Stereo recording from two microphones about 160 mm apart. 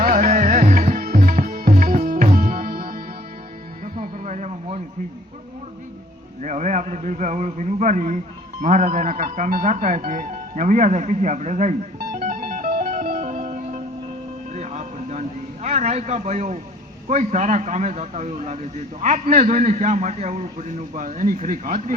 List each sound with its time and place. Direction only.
0.0 s music: 50° right (ahead or behind)
3.9 s a sound: 55° right (ahead or behind)
6.4 s a sound: 50° right (ahead or behind)
8.6 s a man's voice: 50° right (ahead or behind)
11.9 s music: 55° right (ahead or behind)
17.1 s a man's voice: 50° right (ahead or behind)